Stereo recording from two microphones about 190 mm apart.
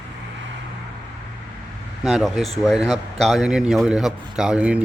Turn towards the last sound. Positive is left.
turn(degrees=-5)  # may be behind; listen again after turning